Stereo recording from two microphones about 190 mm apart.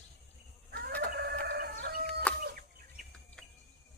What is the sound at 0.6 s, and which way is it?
Chicken, 55° right (ahead or behind).